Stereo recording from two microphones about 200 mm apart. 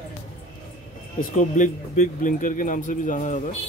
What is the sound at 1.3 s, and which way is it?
Speech, 40° left (ahead or behind).